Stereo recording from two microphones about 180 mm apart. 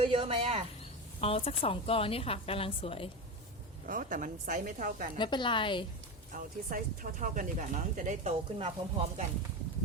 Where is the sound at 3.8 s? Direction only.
50° right (ahead or behind).